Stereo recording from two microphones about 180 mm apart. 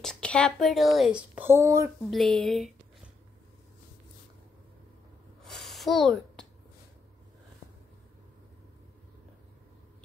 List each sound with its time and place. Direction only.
0.0 s a woman's voice: 5° left (ahead or behind); by 1.9 s 15° right (ahead or behind)
2.0 s speech: centre (ahead or behind)
5.4 s a sound: centre (ahead or behind)